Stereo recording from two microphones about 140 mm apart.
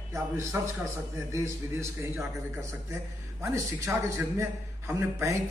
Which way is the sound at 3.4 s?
20° right (ahead or behind).